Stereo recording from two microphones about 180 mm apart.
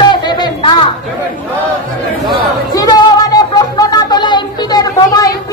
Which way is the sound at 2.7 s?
20° left (ahead or behind).